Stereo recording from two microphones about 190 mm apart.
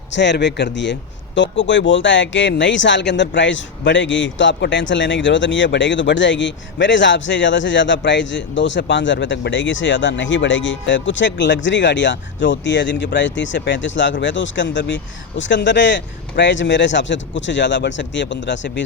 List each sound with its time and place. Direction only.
0.1 s speech: 65° left (ahead or behind)